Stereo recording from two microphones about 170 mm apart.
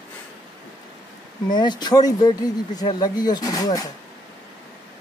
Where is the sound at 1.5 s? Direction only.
25° left (ahead or behind).